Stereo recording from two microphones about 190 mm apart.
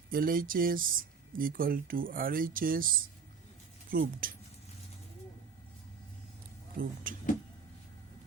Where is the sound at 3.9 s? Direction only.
50° right (ahead or behind).